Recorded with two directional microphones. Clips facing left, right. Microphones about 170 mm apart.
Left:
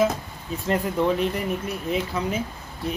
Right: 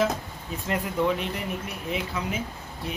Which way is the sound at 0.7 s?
35° left (ahead or behind).